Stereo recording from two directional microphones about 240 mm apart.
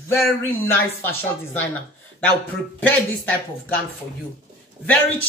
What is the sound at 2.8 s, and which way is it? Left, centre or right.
Speech, centre.